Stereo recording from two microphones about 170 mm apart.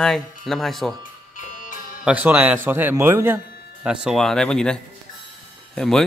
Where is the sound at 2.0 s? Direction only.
10° right (ahead or behind).